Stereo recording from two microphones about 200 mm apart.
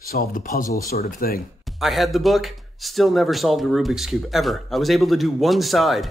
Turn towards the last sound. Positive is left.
turn(degrees=0)  # may be behind; listen again after turning